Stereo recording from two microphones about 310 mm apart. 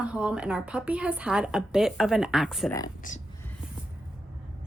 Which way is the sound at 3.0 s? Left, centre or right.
Left.